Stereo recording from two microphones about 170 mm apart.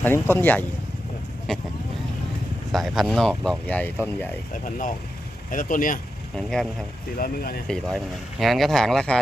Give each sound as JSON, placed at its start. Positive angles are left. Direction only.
{"t": 0.0, "sound": "speech", "side_deg": 15}
{"t": 1.5, "sound": "speech", "side_deg": 0}
{"t": 2.7, "sound": "speech", "side_deg": 0}
{"t": 5.5, "sound": "speech", "side_deg": 50}
{"t": 6.3, "sound": "speech", "side_deg": 5}
{"t": 7.2, "sound": "speech", "side_deg": 60}
{"t": 7.7, "sound": "speech", "side_deg": 5}